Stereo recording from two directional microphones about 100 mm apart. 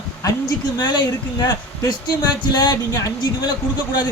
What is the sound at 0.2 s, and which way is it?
A woman's voice, 40° left (ahead or behind).